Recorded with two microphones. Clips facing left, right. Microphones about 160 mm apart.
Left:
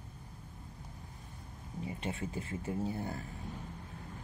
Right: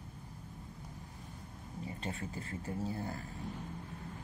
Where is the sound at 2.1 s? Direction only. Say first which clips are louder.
Left 3 dB; 20° left (ahead or behind).